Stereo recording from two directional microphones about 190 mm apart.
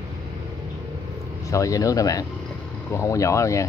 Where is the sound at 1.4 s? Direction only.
15° left (ahead or behind).